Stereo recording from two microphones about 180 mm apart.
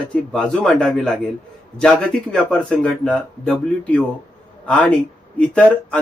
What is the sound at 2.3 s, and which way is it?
Speech, 5° left (ahead or behind).